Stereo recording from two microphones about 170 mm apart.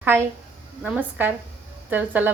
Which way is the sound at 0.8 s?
5° right (ahead or behind).